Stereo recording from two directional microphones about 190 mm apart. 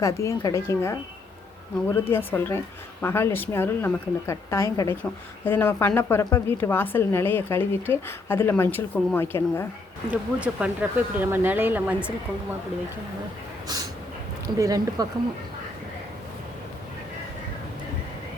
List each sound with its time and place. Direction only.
0.0 s a woman's voice: 15° left (ahead or behind)
2.0 s a woman's voice: 10° left (ahead or behind)
10.1 s speech: 5° right (ahead or behind)
14.4 s speech: 20° right (ahead or behind)